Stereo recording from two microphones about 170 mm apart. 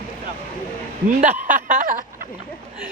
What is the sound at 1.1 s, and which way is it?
Speech, 50° right (ahead or behind).